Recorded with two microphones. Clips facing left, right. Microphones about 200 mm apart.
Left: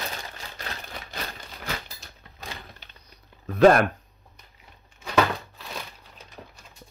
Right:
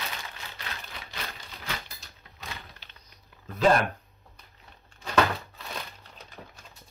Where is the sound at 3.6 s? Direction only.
60° left (ahead or behind).